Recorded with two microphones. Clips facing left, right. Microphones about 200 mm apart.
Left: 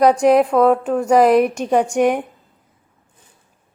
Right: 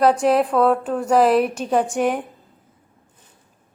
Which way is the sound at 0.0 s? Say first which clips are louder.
Left 4 dB; 10° left (ahead or behind).